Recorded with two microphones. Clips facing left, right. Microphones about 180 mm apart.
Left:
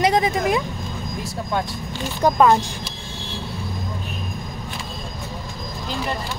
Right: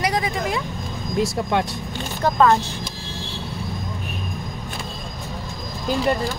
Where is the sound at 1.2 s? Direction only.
85° right.